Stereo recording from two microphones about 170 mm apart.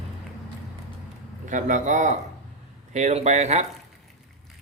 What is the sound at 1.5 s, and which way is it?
A man's voice, 45° right (ahead or behind).